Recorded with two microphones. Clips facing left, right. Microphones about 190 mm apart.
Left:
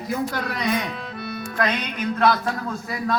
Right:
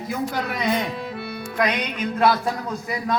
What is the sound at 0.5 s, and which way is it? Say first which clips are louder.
Speech: right 1 dB; 20° right (ahead or behind).